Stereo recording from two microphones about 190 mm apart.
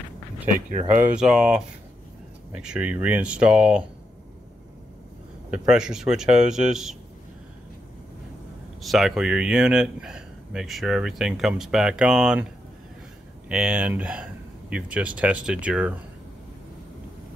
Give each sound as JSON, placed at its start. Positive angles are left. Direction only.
{"t": 0.7, "sound": "speech", "side_deg": -40}
{"t": 1.0, "sound": "speech", "side_deg": -5}
{"t": 5.5, "sound": "speech", "side_deg": -5}
{"t": 8.8, "sound": "speech", "side_deg": 0}
{"t": 13.5, "sound": "speech", "side_deg": -5}